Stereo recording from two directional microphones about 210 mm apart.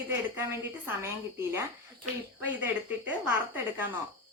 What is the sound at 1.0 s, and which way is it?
Speech, 10° right (ahead or behind).